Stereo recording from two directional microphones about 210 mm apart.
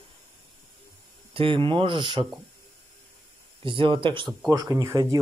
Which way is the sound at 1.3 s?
25° right (ahead or behind).